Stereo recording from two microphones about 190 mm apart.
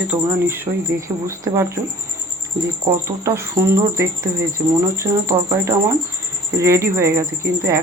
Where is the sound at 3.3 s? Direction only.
15° right (ahead or behind).